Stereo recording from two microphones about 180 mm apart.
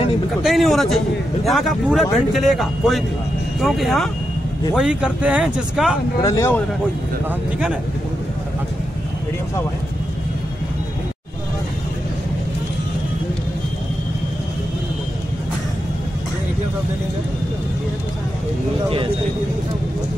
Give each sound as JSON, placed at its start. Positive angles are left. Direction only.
{"t": 0.4, "sound": "a man's voice", "side_deg": 0}
{"t": 6.2, "sound": "speech", "side_deg": 20}
{"t": 7.2, "sound": "speech", "side_deg": -5}